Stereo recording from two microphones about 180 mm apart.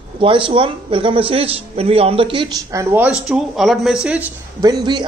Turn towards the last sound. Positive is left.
turn(degrees=-25)  # may be behind; listen again after turning